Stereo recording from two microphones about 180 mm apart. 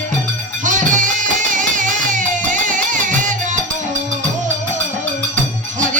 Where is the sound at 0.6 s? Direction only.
45° right (ahead or behind).